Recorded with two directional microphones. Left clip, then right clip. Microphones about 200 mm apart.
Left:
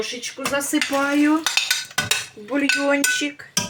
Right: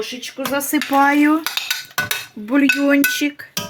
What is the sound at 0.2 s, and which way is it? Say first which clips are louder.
Speech: right 2 dB; 50° right (ahead or behind).